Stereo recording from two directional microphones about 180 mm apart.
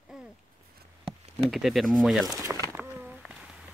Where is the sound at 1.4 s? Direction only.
Centre (ahead or behind).